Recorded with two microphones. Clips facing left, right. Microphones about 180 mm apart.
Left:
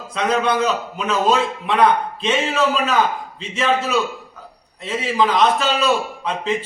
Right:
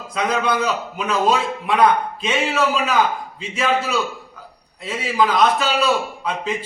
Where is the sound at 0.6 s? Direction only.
10° right (ahead or behind).